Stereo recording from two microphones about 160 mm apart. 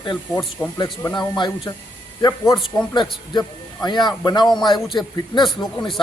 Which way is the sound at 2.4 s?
Centre (ahead or behind).